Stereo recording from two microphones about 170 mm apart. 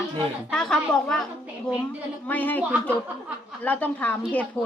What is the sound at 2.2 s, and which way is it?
A woman's voice, 10° left (ahead or behind).